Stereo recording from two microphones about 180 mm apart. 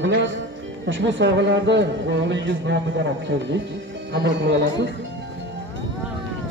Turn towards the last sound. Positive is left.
turn(degrees=-75)  # may be behind; listen again after turning